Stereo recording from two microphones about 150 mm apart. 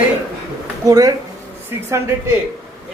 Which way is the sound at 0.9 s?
25° right (ahead or behind).